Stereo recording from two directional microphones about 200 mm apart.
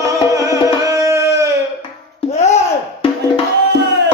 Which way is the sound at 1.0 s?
15° right (ahead or behind).